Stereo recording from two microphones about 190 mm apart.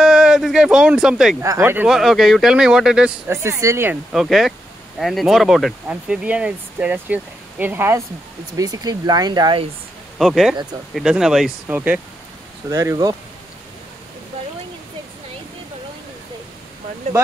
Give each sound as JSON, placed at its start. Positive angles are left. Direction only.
{"t": 0.0, "sound": "speech", "side_deg": -5}
{"t": 1.4, "sound": "speech", "side_deg": -15}
{"t": 3.3, "sound": "speech", "side_deg": -15}
{"t": 4.1, "sound": "speech", "side_deg": 0}
{"t": 10.1, "sound": "speech", "side_deg": 0}